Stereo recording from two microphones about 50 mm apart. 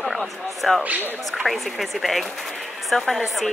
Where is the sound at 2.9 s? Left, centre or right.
Centre.